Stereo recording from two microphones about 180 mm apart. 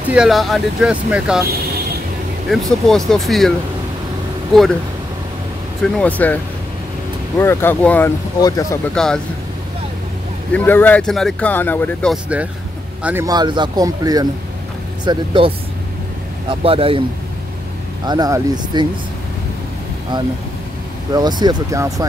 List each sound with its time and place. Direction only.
0.1 s speech: centre (ahead or behind)
2.5 s speech: centre (ahead or behind)
5.8 s speech: 5° left (ahead or behind)
8.9 s speech: 5° left (ahead or behind)
10.5 s speech: 10° left (ahead or behind)
13.0 s a man's voice: 15° right (ahead or behind); by 17.0 s 30° right (ahead or behind)
18.0 s speech: 20° right (ahead or behind)
21.1 s speech: 25° right (ahead or behind)